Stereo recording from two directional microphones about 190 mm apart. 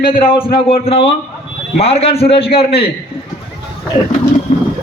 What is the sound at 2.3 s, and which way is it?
Speech, 60° left (ahead or behind).